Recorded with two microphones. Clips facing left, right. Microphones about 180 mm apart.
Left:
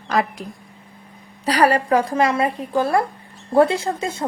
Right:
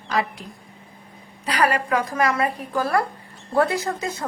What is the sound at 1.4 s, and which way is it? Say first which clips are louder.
A woman's voice: left 5 dB; 35° left (ahead or behind).